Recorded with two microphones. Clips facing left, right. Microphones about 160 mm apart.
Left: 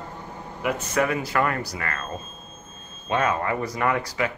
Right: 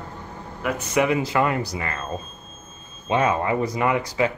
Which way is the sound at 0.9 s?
20° right (ahead or behind).